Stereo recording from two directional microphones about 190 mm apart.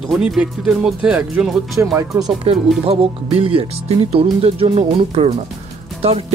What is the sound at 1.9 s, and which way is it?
Speech, 15° right (ahead or behind).